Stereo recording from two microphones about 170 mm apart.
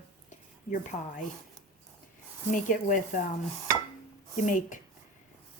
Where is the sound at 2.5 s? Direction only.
50° left (ahead or behind).